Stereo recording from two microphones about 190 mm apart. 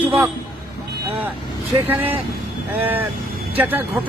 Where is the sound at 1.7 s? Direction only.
10° right (ahead or behind).